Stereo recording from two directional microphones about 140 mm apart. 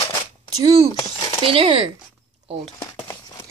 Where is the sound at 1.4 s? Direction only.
40° right (ahead or behind).